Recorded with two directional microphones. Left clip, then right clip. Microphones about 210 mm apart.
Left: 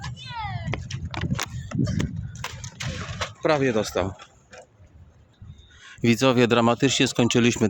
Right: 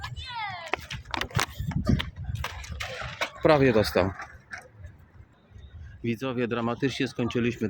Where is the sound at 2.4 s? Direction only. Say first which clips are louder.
Even; 10° left (ahead or behind).